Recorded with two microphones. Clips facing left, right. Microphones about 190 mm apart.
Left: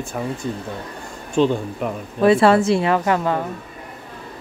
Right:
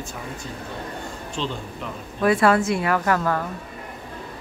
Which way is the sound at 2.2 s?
25° left (ahead or behind).